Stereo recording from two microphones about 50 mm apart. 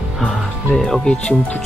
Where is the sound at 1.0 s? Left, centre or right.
Left.